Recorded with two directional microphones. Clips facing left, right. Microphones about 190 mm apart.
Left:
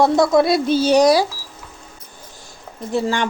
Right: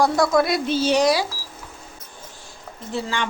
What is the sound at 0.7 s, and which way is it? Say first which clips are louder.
Speech: left 5 dB; 40° left (ahead or behind).